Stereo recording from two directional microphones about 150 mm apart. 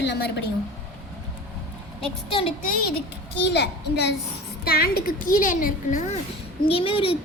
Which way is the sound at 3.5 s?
90° left.